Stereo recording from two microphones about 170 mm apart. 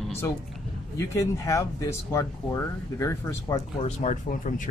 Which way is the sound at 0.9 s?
15° left (ahead or behind).